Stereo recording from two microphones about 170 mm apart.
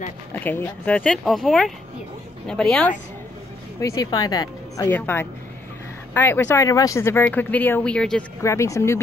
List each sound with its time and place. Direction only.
0.3 s speech: 10° left (ahead or behind)
3.8 s speech: 20° left (ahead or behind); by 8.3 s 5° left (ahead or behind)
8.4 s speech: 15° left (ahead or behind)